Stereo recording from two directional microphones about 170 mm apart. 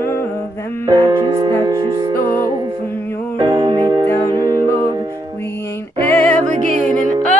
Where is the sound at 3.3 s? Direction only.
25° right (ahead or behind).